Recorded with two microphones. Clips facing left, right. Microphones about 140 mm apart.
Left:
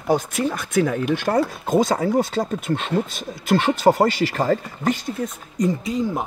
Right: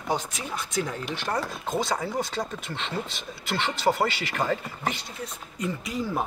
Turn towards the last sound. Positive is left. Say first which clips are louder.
# left 6 dB
turn(degrees=20)  # may be behind; listen again after turning